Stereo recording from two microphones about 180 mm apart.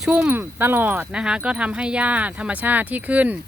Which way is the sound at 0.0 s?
5° right (ahead or behind).